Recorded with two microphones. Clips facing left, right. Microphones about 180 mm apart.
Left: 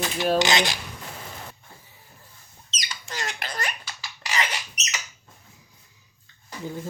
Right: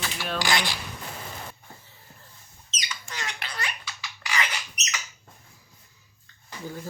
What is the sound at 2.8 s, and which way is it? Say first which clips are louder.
Rodents: left 3 dB; 35° left (ahead or behind).